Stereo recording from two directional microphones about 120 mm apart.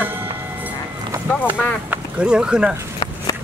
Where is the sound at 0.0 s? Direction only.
15° right (ahead or behind).